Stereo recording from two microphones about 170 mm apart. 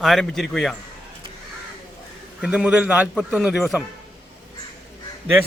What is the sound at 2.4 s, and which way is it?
A man's voice, 5° right (ahead or behind).